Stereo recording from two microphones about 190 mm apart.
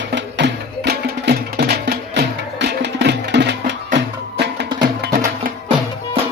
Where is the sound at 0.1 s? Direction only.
65° right (ahead or behind).